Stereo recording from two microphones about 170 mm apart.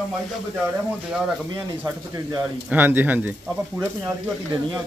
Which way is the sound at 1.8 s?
20° right (ahead or behind).